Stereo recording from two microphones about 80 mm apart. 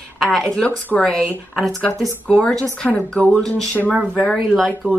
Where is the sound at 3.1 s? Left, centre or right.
Centre.